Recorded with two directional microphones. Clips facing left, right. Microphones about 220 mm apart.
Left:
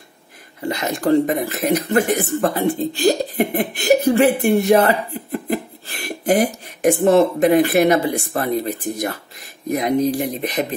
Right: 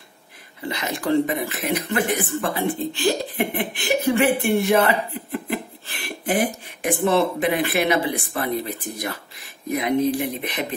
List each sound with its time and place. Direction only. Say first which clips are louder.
0.6 s speech: left 5 dB; 45° left (ahead or behind)